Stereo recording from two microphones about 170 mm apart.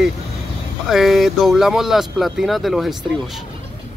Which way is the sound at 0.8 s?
Centre (ahead or behind).